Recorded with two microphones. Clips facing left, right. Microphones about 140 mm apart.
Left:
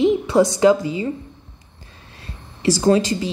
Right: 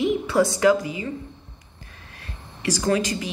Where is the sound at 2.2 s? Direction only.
25° left (ahead or behind).